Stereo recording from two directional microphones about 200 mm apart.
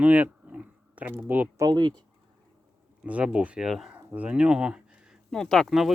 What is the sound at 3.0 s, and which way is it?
Speech, 5° right (ahead or behind).